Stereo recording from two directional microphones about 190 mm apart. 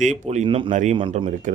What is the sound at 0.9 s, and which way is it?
Speech, 25° right (ahead or behind).